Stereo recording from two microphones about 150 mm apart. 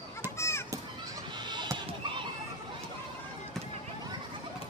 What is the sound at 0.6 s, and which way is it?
Children playing, 25° right (ahead or behind).